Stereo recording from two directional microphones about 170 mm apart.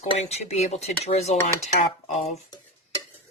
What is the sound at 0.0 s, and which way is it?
Speech, 40° left (ahead or behind).